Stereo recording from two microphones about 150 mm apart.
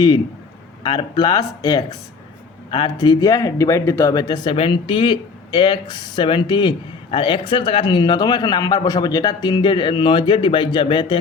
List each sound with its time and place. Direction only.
0.8 s speech: 30° left (ahead or behind)